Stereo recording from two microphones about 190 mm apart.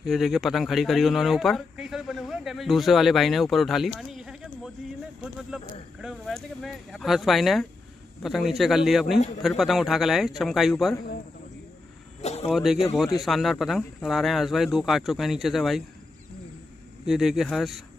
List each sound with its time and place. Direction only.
0.0 s speech: centre (ahead or behind)
5.9 s speech: centre (ahead or behind)
12.2 s a sound: 35° left (ahead or behind)
12.4 s speech: centre (ahead or behind)
17.0 s speech: centre (ahead or behind)